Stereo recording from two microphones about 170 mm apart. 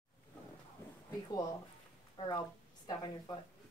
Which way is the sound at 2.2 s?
30° left (ahead or behind).